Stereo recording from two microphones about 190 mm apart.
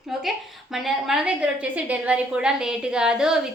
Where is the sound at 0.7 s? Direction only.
Centre (ahead or behind).